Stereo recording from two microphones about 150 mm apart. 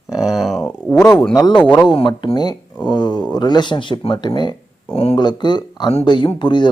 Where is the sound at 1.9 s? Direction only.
35° left (ahead or behind).